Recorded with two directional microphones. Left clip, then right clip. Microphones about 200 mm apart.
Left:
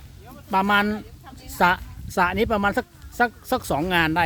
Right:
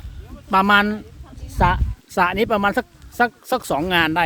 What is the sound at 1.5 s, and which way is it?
A woman's voice, 5° right (ahead or behind).